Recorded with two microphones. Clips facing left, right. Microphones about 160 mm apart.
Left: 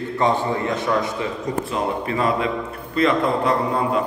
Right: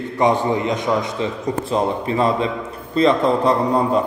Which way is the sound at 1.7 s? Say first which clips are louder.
Right 6 dB; 30° right (ahead or behind).